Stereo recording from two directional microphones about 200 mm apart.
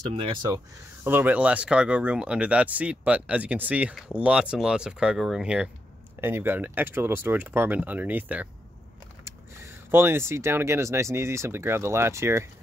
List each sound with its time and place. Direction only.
0.1 s speech: 25° right (ahead or behind)
1.0 s speech: 10° right (ahead or behind)